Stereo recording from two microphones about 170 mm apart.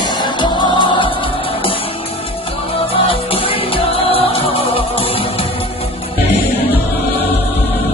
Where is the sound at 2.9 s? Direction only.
35° left (ahead or behind).